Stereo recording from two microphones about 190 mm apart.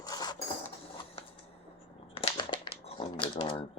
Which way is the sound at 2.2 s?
25° left (ahead or behind).